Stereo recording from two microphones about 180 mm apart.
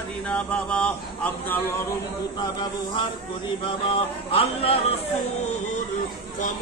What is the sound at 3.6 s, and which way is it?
Music, 30° left (ahead or behind).